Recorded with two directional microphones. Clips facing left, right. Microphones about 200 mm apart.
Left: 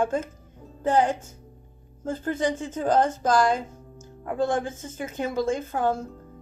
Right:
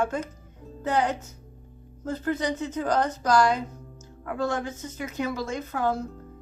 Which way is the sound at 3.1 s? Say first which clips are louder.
Even; 50° left (ahead or behind).